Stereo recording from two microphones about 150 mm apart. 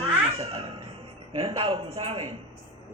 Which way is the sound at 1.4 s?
40° right (ahead or behind).